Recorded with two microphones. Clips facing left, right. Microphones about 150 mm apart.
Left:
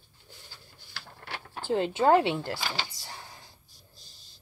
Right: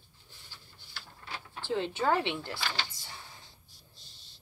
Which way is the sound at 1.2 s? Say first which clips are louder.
Left 3 dB; 65° left (ahead or behind).